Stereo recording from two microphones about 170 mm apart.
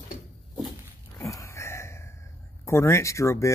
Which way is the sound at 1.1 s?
20° left (ahead or behind).